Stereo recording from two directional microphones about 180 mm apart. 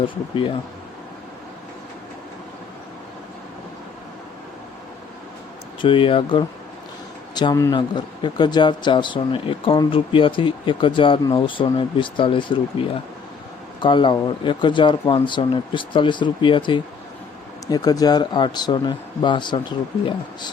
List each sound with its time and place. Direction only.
0.0 s speech: 30° left (ahead or behind)
5.8 s speech: 30° left (ahead or behind)
13.8 s speech: 25° left (ahead or behind)